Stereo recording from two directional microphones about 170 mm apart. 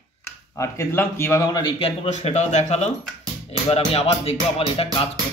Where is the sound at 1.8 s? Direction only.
40° left (ahead or behind).